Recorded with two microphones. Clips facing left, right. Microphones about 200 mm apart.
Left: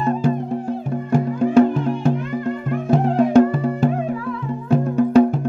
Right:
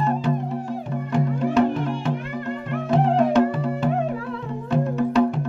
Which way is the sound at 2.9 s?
45° left (ahead or behind).